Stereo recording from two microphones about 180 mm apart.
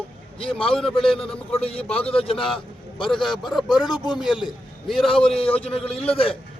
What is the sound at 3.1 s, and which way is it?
A man's voice, centre (ahead or behind).